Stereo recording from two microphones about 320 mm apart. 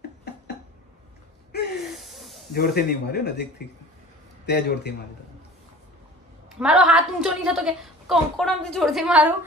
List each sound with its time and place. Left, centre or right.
1.8 s snort: centre
2.5 s a man's voice: left
6.6 s a woman's voice: centre